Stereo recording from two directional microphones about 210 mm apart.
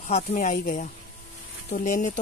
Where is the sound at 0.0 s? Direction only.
35° left (ahead or behind).